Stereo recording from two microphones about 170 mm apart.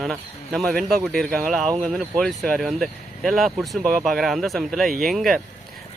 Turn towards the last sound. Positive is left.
turn(degrees=0)  # may be behind; listen again after turning